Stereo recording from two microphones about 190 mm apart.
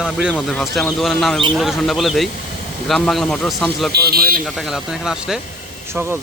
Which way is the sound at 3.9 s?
55° right (ahead or behind).